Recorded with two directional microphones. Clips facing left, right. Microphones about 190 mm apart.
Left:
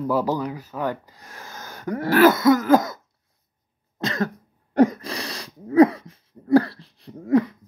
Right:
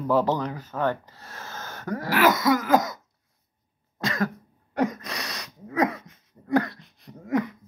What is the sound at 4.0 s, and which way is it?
Cough, 25° left (ahead or behind).